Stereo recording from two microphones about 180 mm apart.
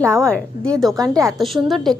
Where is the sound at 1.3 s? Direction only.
Centre (ahead or behind).